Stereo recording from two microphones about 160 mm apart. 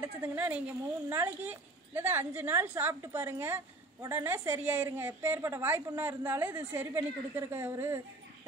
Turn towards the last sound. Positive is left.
turn(degrees=-15)  # may be behind; listen again after turning